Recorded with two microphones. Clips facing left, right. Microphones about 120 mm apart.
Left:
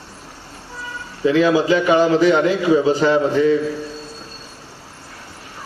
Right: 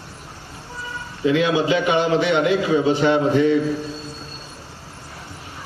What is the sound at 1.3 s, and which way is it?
A man's voice, 35° left (ahead or behind).